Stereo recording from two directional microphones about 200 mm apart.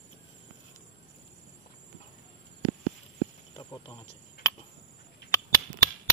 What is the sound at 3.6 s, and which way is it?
Cricket, 20° left (ahead or behind).